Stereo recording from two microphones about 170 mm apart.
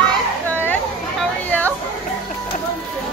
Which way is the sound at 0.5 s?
10° left (ahead or behind).